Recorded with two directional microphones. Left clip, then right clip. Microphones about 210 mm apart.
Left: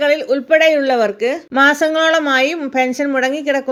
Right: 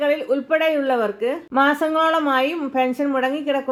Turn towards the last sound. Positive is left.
turn(degrees=30)  # may be behind; listen again after turning